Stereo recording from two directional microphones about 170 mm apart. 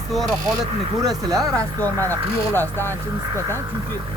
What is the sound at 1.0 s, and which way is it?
Speech, 20° right (ahead or behind).